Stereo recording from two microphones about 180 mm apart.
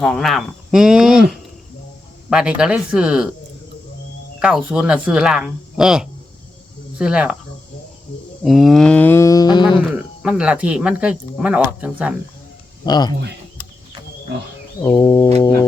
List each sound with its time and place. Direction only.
0.0 s speech: centre (ahead or behind)
2.3 s speech: 5° right (ahead or behind)
4.4 s speech: 5° right (ahead or behind)
8.4 s mantra: centre (ahead or behind); by 9.7 s 25° left (ahead or behind)
9.9 s speech: 5° right (ahead or behind)
12.8 s a man's voice: 20° left (ahead or behind)
14.8 s a sound: 25° left (ahead or behind)